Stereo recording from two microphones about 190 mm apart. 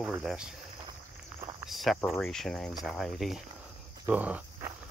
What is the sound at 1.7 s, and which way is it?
Speech, centre (ahead or behind).